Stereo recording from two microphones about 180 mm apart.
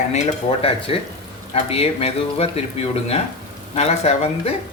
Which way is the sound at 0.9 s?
30° left (ahead or behind).